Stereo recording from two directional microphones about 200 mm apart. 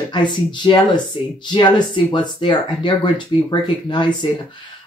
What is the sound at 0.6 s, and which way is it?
Speech, 20° left (ahead or behind).